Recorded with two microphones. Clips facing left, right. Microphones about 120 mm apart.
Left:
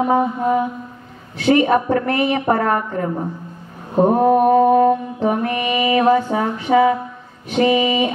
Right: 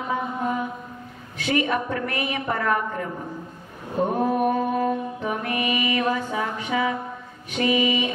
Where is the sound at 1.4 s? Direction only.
40° left (ahead or behind).